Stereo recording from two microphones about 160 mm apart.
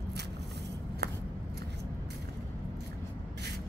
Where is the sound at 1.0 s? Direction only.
90° right.